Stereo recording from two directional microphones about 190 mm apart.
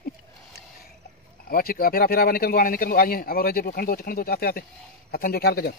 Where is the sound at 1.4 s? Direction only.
50° left (ahead or behind).